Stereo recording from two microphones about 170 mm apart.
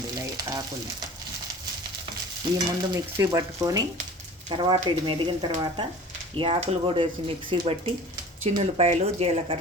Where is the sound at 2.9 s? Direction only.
20° right (ahead or behind).